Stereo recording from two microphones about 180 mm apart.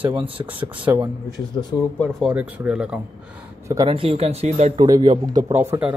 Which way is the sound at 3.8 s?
35° right (ahead or behind).